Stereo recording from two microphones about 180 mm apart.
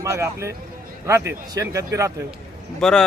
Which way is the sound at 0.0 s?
15° right (ahead or behind).